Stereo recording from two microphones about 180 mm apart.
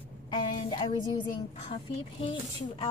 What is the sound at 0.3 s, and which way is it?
Speech, 25° left (ahead or behind).